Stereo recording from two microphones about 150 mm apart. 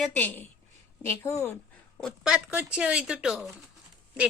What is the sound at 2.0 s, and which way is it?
Speech, 5° right (ahead or behind).